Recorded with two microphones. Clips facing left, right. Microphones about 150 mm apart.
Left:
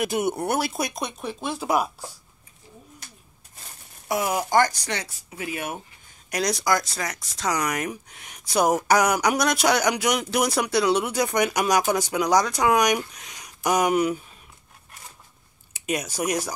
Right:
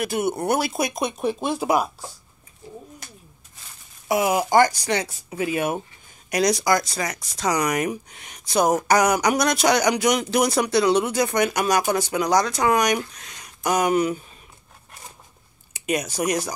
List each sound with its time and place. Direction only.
0.0 s speech: 20° left (ahead or behind)
0.4 s speech: centre (ahead or behind); by 1.7 s 15° right (ahead or behind)
4.1 s speech: 10° right (ahead or behind)
6.3 s speech: centre (ahead or behind)
15.7 s speech: centre (ahead or behind)